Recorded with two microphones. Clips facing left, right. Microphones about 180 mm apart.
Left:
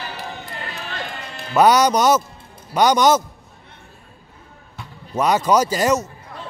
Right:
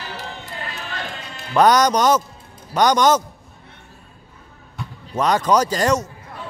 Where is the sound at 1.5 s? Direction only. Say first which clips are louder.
Even; 10° left (ahead or behind).